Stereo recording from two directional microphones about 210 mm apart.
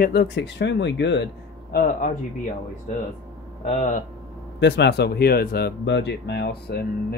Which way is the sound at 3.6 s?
35° left (ahead or behind).